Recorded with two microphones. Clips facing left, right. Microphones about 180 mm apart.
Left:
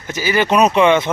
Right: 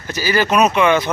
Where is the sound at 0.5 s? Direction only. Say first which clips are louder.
Left 2 dB; 30° left (ahead or behind).